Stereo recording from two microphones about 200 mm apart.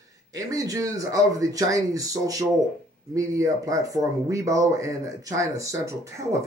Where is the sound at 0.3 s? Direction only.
15° right (ahead or behind).